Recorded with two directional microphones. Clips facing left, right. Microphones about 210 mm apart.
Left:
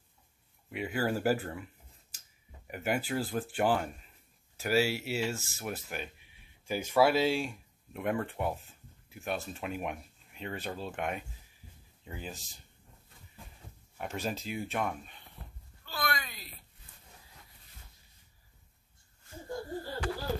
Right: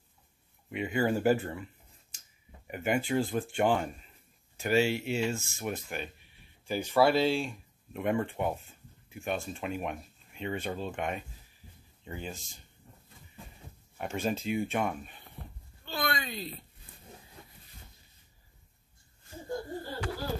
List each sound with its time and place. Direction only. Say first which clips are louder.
0.7 s speech: right 3 dB; 5° left (ahead or behind)
2.7 s speech: right 3 dB; 5° left (ahead or behind)
13.9 s speech: right 4 dB; centre (ahead or behind)
15.8 s a sound: right 3 dB; 25° right (ahead or behind)